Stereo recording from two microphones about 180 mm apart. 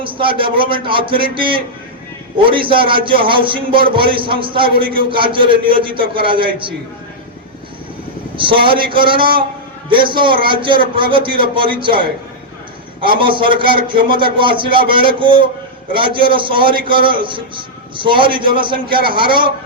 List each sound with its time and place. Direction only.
0.0 s speech: 30° right (ahead or behind)
8.4 s speech: 30° right (ahead or behind)